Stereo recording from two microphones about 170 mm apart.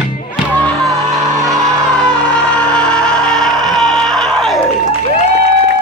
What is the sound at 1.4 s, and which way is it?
Music, centre (ahead or behind).